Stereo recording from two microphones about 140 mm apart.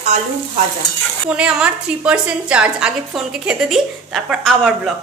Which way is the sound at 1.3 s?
5° right (ahead or behind).